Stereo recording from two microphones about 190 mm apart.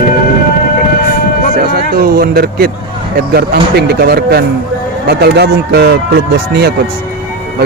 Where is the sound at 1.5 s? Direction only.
50° right (ahead or behind).